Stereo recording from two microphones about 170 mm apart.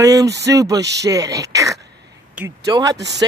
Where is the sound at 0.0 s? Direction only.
20° right (ahead or behind).